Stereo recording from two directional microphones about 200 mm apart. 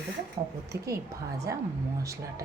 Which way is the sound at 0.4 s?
30° right (ahead or behind).